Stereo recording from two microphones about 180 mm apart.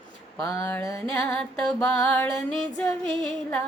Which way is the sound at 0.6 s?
15° left (ahead or behind).